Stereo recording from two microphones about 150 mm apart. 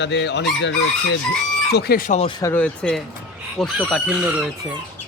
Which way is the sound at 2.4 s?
10° left (ahead or behind).